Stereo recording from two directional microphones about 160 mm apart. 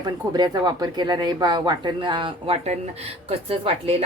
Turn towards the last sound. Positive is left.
turn(degrees=-35)  # may be behind; listen again after turning